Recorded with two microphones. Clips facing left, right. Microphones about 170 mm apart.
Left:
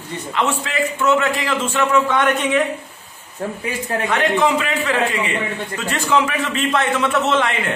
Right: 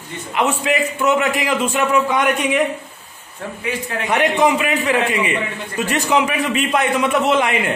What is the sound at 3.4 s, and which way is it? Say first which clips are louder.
Speech: left 4 dB; 40° left (ahead or behind).